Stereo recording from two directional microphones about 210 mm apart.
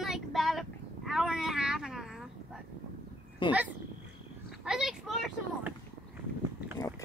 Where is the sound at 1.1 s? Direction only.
Centre (ahead or behind).